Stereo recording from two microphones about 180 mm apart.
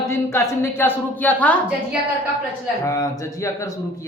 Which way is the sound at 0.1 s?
15° left (ahead or behind).